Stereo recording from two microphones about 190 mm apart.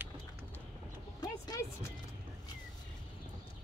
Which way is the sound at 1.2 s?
20° left (ahead or behind).